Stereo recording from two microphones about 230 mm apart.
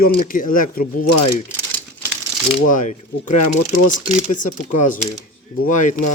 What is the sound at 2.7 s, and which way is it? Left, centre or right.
Speech, left.